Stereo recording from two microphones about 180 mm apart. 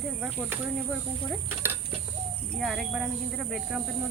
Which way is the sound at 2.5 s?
Centre (ahead or behind).